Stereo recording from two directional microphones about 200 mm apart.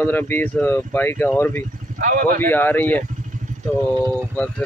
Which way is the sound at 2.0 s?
45° right (ahead or behind).